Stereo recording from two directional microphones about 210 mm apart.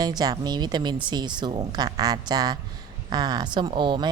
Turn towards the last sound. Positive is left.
turn(degrees=-20)  # may be behind; listen again after turning